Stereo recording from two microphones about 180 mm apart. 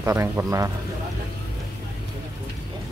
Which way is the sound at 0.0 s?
15° right (ahead or behind).